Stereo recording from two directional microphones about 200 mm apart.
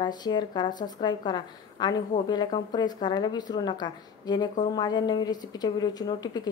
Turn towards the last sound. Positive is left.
turn(degrees=20)  # may be behind; listen again after turning